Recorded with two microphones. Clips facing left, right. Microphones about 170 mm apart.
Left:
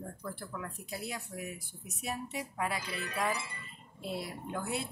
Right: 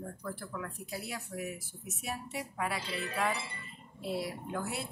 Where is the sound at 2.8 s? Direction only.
30° right (ahead or behind).